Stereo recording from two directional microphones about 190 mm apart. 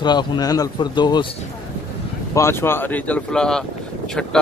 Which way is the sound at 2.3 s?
15° left (ahead or behind).